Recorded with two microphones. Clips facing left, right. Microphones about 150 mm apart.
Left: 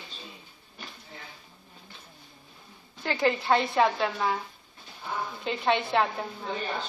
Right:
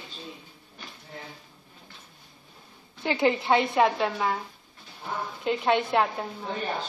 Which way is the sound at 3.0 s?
20° right (ahead or behind).